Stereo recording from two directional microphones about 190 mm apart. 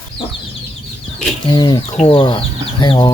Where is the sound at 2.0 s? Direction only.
35° left (ahead or behind).